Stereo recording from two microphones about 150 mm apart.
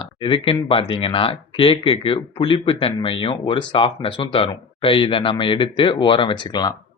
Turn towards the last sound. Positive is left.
turn(degrees=30)  # may be behind; listen again after turning